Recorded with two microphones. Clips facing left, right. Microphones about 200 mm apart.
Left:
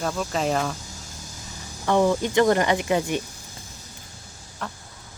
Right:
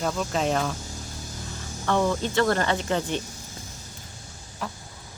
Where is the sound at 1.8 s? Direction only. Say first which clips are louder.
Left 4 dB; 15° left (ahead or behind).